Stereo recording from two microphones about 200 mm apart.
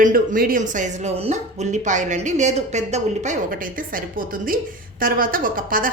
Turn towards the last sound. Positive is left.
turn(degrees=-45)  # may be behind; listen again after turning